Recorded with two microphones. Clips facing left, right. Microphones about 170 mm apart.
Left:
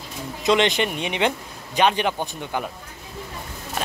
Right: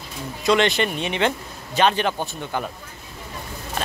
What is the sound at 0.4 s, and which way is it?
Speech, 20° left (ahead or behind).